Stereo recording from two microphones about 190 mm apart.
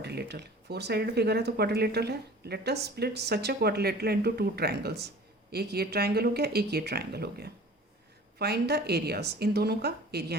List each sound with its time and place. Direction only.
0.0 s speech: 60° right (ahead or behind)